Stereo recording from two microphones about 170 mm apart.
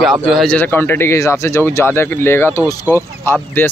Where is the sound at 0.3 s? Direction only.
5° left (ahead or behind).